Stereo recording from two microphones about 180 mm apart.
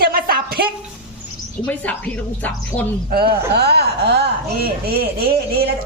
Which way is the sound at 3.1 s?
60° right (ahead or behind).